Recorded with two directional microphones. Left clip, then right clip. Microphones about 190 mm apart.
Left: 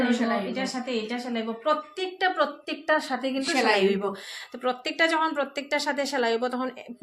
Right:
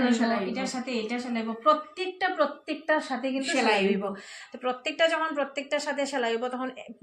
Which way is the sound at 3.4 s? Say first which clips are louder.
Left 1 dB; 60° left (ahead or behind).